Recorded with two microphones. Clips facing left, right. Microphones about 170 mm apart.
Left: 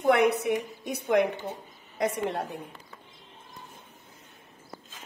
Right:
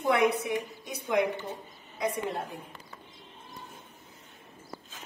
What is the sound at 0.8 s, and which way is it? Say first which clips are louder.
Speech: left 4 dB; 60° left (ahead or behind).